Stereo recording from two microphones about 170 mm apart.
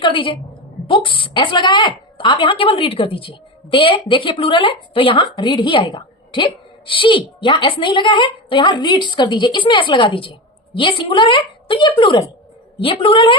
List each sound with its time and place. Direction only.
0.0 s a woman's voice: 30° left (ahead or behind)